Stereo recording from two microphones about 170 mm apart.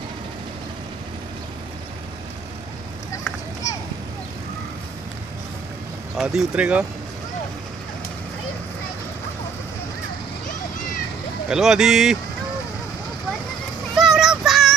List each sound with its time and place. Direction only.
3.6 s a sound: 20° left (ahead or behind)
6.1 s speech: centre (ahead or behind)
11.4 s speech: 5° right (ahead or behind)
13.9 s child singing: centre (ahead or behind)